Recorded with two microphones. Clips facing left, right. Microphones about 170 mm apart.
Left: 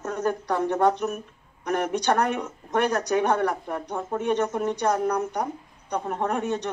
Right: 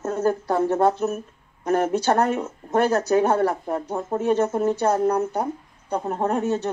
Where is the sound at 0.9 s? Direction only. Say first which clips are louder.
Right 3 dB; 5° right (ahead or behind).